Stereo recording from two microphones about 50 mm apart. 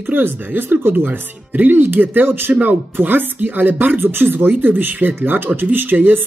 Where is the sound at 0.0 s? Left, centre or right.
Right.